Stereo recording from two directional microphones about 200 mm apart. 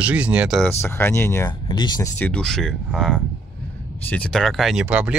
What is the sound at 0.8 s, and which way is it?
Speech, 10° left (ahead or behind).